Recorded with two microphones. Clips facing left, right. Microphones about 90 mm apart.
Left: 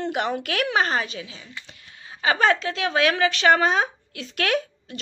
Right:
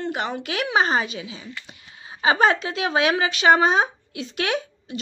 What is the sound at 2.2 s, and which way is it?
A woman's voice, 20° right (ahead or behind).